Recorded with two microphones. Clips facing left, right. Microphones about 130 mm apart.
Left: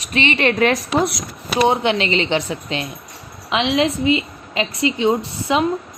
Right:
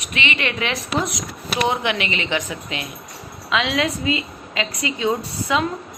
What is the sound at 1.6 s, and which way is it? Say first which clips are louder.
A woman's voice: left 5 dB; 30° left (ahead or behind).